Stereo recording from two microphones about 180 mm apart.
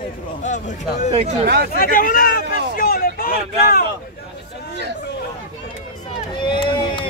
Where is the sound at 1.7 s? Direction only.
50° left (ahead or behind).